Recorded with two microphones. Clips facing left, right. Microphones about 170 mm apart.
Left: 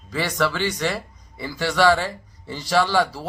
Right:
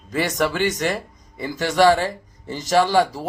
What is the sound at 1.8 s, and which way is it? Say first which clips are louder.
Speech: right 3 dB; 45° right (ahead or behind).